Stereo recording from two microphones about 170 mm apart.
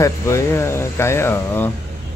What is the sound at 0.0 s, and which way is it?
Speech, 15° left (ahead or behind).